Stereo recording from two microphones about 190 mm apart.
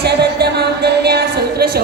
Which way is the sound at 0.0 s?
60° right (ahead or behind).